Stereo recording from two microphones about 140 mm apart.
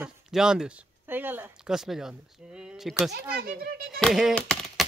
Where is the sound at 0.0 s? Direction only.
5° right (ahead or behind).